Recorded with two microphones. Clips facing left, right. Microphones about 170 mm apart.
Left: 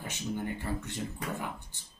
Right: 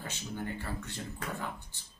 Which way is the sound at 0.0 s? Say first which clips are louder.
Left 4 dB; 15° left (ahead or behind).